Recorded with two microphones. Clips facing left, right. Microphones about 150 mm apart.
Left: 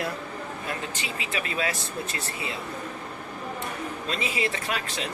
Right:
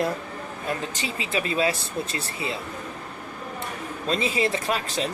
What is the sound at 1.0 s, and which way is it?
Speech, 30° right (ahead or behind).